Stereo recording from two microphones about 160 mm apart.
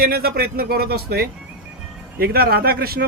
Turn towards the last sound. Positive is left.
turn(degrees=-75)  # may be behind; listen again after turning